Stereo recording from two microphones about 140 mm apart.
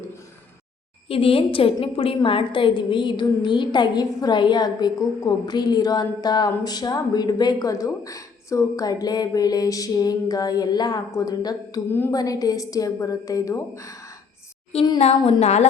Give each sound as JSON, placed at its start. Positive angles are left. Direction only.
{"t": 1.0, "sound": "a woman's voice", "side_deg": 40}
{"t": 11.9, "sound": "a woman's voice", "side_deg": 15}
{"t": 12.1, "sound": "a woman's voice", "side_deg": 25}
{"t": 14.9, "sound": "a woman's voice", "side_deg": 50}